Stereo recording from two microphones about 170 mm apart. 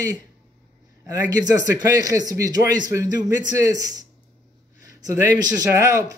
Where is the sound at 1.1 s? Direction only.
20° right (ahead or behind).